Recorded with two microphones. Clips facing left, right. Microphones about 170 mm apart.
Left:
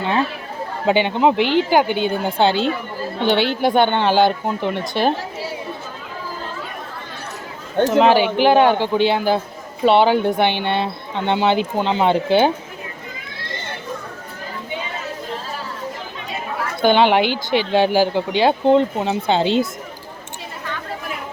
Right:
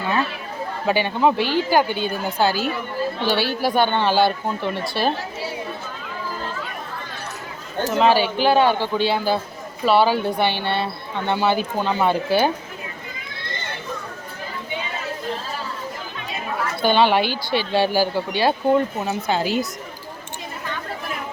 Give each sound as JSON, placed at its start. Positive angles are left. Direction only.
{"t": 0.9, "sound": "speech", "side_deg": 20}
{"t": 7.9, "sound": "speech", "side_deg": 15}
{"t": 16.8, "sound": "speech", "side_deg": 15}